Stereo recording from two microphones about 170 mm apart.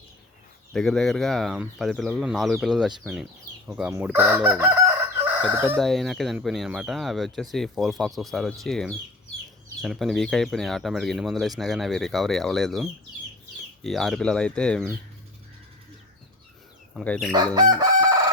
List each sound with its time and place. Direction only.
0.7 s speech: centre (ahead or behind)
3.7 s chicken: 10° right (ahead or behind)
5.7 s speech: centre (ahead or behind)
16.9 s speech: 5° left (ahead or behind)
17.3 s chicken: 25° right (ahead or behind)